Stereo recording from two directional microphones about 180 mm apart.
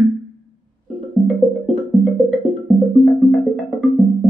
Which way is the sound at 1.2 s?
Centre (ahead or behind).